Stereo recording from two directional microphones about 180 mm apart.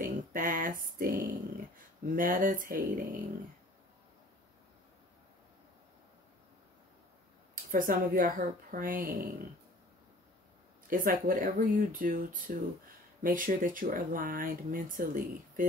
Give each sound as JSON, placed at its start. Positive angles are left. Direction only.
{"t": 0.0, "sound": "speech", "side_deg": -50}
{"t": 7.5, "sound": "speech", "side_deg": -50}
{"t": 10.9, "sound": "speech", "side_deg": -50}